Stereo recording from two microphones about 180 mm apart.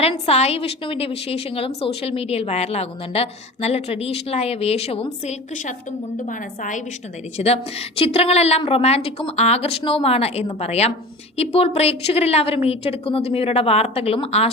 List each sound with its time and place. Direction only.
0.0 s a woman's voice: 35° left (ahead or behind)
7.3 s a woman's voice: 35° left (ahead or behind)